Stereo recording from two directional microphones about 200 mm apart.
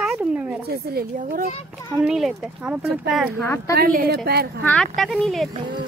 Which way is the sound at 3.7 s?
45° right (ahead or behind).